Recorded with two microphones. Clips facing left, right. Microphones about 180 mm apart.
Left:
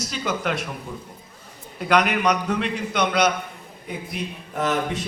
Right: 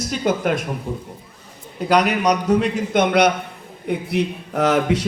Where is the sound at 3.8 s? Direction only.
65° right (ahead or behind); by 5.0 s 90° right.